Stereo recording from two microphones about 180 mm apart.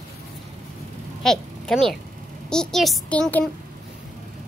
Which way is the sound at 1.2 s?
Centre (ahead or behind).